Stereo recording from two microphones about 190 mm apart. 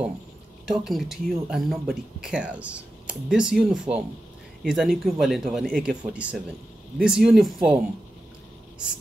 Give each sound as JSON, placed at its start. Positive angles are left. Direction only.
{"t": 0.7, "sound": "speech", "side_deg": 0}